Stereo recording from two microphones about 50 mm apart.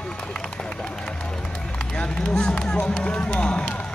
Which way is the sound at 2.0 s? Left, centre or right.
Left.